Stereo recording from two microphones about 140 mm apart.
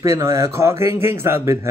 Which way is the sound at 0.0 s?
20° right (ahead or behind).